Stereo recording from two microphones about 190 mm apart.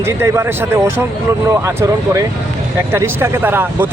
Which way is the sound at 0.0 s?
10° right (ahead or behind).